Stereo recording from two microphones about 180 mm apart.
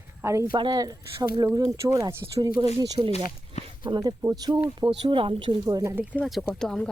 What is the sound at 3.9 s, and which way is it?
Speech, 20° right (ahead or behind).